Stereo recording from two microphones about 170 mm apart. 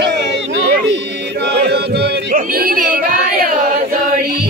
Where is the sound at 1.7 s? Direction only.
70° right (ahead or behind).